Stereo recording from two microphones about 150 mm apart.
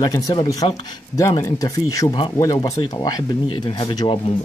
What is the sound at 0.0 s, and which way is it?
Speech, 25° left (ahead or behind).